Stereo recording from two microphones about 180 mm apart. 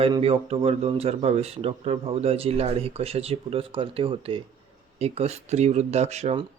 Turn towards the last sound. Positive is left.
turn(degrees=-35)  # may be behind; listen again after turning